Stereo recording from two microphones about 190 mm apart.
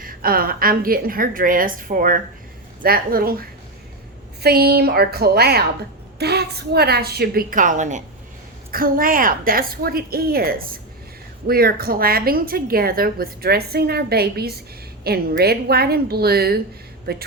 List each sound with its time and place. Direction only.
0.0 s a woman's voice: 50° right (ahead or behind)
4.4 s a woman's voice: 55° right (ahead or behind)